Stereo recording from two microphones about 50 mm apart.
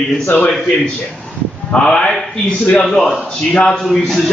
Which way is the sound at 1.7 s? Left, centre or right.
Centre.